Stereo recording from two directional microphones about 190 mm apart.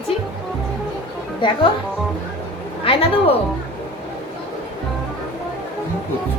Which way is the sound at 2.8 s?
30° left (ahead or behind).